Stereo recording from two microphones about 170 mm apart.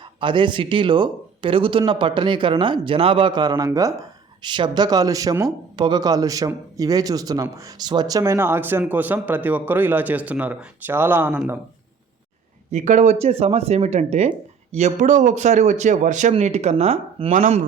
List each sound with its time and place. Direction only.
0.2 s speech: 30° right (ahead or behind); by 11.5 s 10° right (ahead or behind)
12.7 s speech: 45° right (ahead or behind)